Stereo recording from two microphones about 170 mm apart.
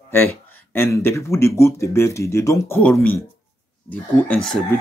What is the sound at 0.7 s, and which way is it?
Speech, 15° left (ahead or behind).